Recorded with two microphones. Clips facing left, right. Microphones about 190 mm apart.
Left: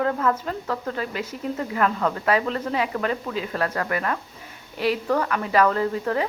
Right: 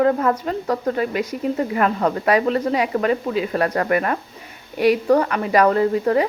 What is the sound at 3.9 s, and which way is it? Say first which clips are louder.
Speech: right 6 dB; 50° right (ahead or behind).